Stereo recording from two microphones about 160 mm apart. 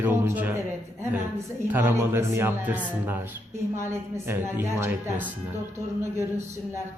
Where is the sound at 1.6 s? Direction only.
15° right (ahead or behind).